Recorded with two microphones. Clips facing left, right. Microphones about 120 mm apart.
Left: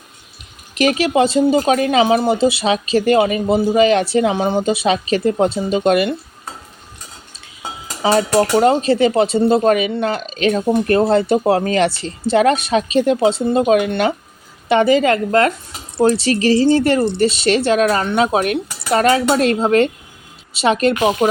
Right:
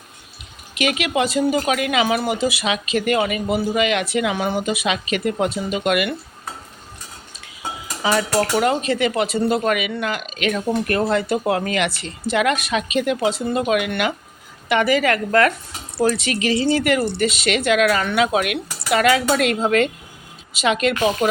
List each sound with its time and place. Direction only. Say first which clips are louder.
0.7 s speech: left 6 dB; 40° left (ahead or behind)
8.0 s speech: left 5 dB; 30° left (ahead or behind)